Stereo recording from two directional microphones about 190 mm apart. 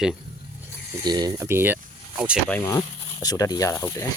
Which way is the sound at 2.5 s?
15° left (ahead or behind).